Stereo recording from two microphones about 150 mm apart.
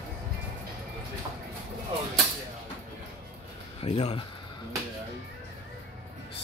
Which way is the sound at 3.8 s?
40° left (ahead or behind).